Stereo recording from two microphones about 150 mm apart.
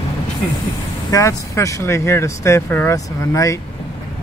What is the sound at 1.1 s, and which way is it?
Speech, 20° left (ahead or behind).